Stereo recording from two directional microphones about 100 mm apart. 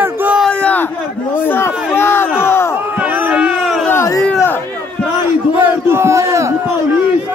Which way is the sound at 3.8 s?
30° left (ahead or behind).